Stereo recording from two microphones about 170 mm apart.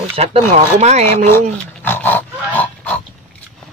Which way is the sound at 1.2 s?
15° left (ahead or behind).